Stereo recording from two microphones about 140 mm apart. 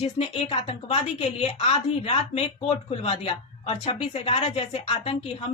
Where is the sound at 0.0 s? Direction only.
45° left (ahead or behind).